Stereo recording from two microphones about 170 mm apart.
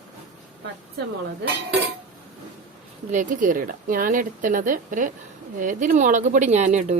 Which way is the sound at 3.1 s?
50° right (ahead or behind).